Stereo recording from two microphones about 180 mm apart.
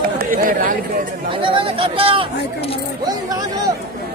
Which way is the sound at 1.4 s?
30° right (ahead or behind).